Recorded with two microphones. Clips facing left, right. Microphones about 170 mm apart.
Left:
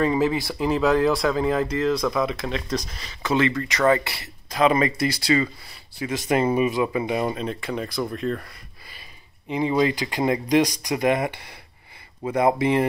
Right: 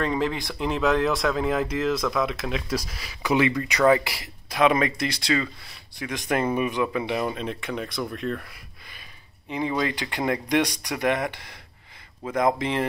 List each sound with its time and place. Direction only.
0.0 s speech: 5° left (ahead or behind); by 4.6 s 15° right (ahead or behind)
4.6 s speech: centre (ahead or behind)
9.5 s speech: 15° left (ahead or behind)